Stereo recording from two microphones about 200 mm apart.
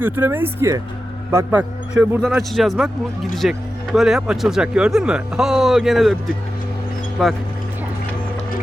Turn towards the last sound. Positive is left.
turn(degrees=0)  # may be behind; listen again after turning